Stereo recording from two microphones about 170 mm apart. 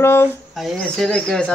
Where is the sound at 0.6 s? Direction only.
5° left (ahead or behind).